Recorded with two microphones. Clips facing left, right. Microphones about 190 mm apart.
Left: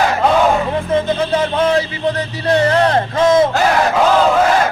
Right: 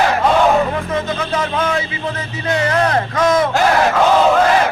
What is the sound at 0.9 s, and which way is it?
Speech, 30° left (ahead or behind).